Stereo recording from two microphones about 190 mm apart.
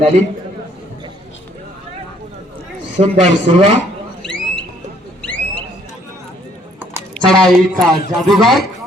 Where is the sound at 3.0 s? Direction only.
30° right (ahead or behind).